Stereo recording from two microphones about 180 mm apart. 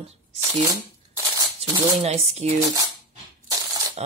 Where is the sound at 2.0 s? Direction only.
35° right (ahead or behind).